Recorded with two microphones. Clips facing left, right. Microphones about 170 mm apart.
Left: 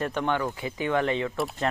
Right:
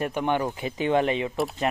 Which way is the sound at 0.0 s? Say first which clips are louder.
Right 2 dB; 15° right (ahead or behind).